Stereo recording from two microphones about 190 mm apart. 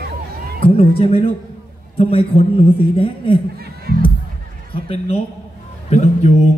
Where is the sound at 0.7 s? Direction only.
30° left (ahead or behind).